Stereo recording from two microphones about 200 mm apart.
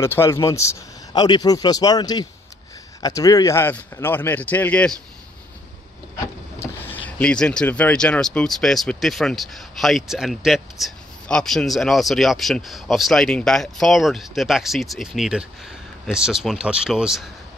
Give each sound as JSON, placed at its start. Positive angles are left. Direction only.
{"t": 0.0, "sound": "speech", "side_deg": 15}
{"t": 6.6, "sound": "speech", "side_deg": 10}